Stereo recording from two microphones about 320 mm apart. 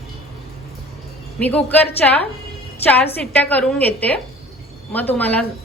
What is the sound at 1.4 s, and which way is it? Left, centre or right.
Speech, centre.